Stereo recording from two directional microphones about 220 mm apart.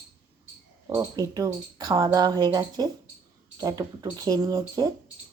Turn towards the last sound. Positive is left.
turn(degrees=-15)  # may be behind; listen again after turning